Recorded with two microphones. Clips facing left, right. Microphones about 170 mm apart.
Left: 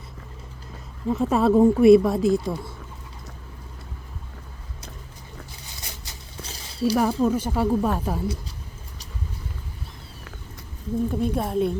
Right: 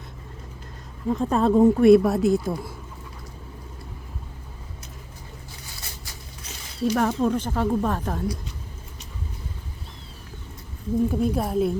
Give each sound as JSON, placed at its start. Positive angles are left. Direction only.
{"t": 1.0, "sound": "speech", "side_deg": 5}
{"t": 6.1, "sound": "a sound", "side_deg": 30}
{"t": 6.9, "sound": "speech", "side_deg": 10}
{"t": 11.1, "sound": "speech", "side_deg": -5}